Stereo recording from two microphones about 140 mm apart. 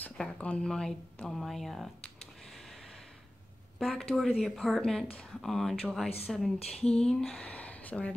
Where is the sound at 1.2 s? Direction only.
Centre (ahead or behind).